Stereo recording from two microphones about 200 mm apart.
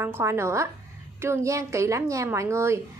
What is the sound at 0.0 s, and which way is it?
A woman's voice, 10° right (ahead or behind).